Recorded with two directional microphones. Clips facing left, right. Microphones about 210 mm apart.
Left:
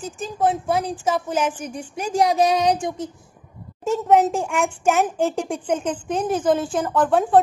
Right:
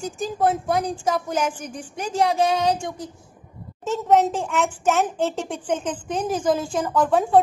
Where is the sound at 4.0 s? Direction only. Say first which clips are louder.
Left 1 dB; 5° left (ahead or behind).